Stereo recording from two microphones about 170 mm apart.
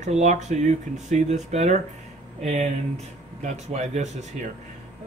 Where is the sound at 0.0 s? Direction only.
45° right (ahead or behind).